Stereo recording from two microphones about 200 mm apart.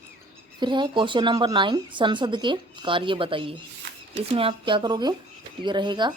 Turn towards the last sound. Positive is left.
turn(degrees=-20)  # may be behind; listen again after turning